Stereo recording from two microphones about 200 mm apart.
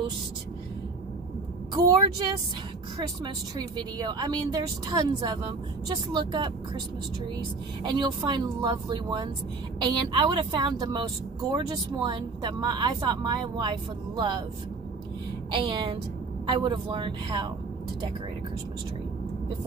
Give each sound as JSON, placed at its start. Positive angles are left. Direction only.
{"t": 1.7, "sound": "speech", "side_deg": -20}
{"t": 3.5, "sound": "speech", "side_deg": -20}
{"t": 7.8, "sound": "speech", "side_deg": -20}
{"t": 15.5, "sound": "speech", "side_deg": -25}